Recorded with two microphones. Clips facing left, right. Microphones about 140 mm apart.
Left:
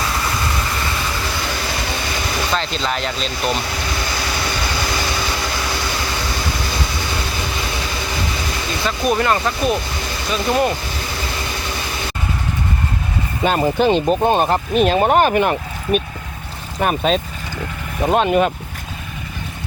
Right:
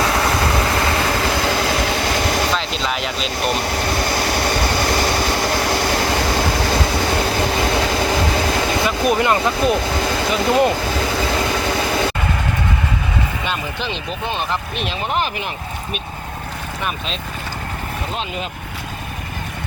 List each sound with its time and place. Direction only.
0.8 s vehicle: 85° right
2.5 s speech: centre (ahead or behind)
3.8 s vehicle: 50° right (ahead or behind)
9.0 s speech: 20° right (ahead or behind)
10.9 s vehicle: 90° right
13.4 s speech: 45° left (ahead or behind)